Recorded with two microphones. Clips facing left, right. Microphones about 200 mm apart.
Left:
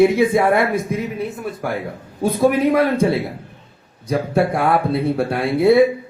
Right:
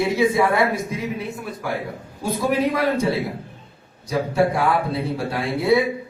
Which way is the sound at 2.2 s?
55° left (ahead or behind).